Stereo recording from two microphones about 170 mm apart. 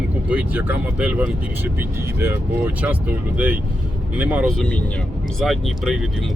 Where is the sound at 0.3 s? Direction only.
10° right (ahead or behind).